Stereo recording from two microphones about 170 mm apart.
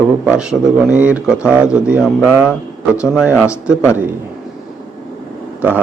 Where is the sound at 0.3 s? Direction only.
5° right (ahead or behind).